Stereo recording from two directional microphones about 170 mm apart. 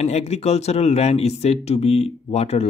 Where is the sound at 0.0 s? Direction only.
40° left (ahead or behind).